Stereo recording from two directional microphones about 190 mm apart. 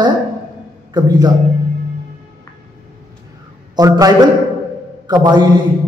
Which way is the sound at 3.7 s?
20° right (ahead or behind).